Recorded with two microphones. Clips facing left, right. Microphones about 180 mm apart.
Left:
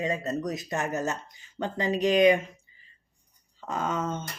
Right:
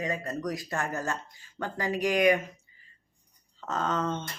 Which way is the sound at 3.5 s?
10° left (ahead or behind).